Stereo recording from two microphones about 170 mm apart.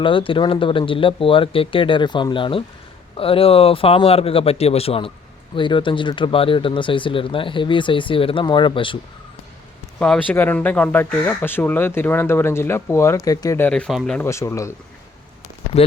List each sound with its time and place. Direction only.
0.0 s speech: 30° left (ahead or behind)
10.0 s speech: 10° left (ahead or behind)
13.7 s speech: 5° left (ahead or behind)
14.2 s speech: 15° left (ahead or behind)